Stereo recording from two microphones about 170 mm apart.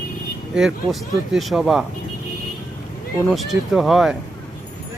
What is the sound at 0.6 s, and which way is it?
Speech, centre (ahead or behind).